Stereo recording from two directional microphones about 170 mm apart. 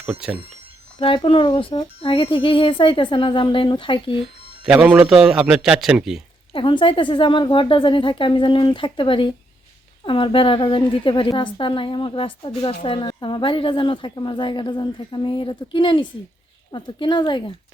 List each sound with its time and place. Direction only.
0.0 s a man's voice: 5° right (ahead or behind)
0.9 s speech: 30° left (ahead or behind)
4.6 s a man's voice: 5° right (ahead or behind)
6.5 s a woman's voice: 30° left (ahead or behind)